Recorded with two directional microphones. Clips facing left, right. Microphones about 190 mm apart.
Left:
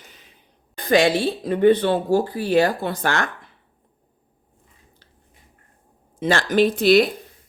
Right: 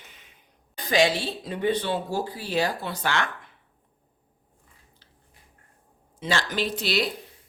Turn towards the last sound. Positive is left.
turn(degrees=50)  # may be behind; listen again after turning